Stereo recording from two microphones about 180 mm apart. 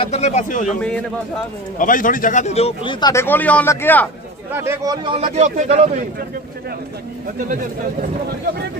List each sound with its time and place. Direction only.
0.0 s speech: 40° left (ahead or behind)
0.7 s a man's voice: 5° left (ahead or behind)
1.8 s a man's voice: 50° left (ahead or behind); by 4.1 s 10° left (ahead or behind)
4.5 s speech: 15° right (ahead or behind)
5.2 s speech: 40° right (ahead or behind)